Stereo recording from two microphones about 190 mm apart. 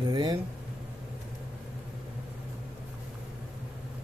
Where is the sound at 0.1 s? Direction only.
20° right (ahead or behind).